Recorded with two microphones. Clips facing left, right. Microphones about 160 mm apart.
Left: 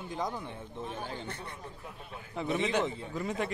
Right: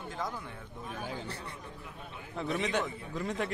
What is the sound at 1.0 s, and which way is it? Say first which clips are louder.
Speech: even; 5° right (ahead or behind).